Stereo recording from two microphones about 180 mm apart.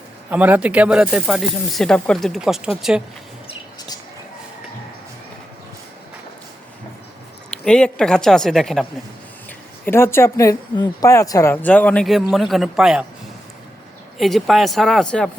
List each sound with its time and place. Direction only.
0.3 s speech: 10° right (ahead or behind)
3.4 s a sound: 20° left (ahead or behind)
7.6 s speech: 5° left (ahead or behind)
9.8 s a woman's voice: 15° left (ahead or behind); by 13.1 s 5° right (ahead or behind)
14.2 s speech: centre (ahead or behind)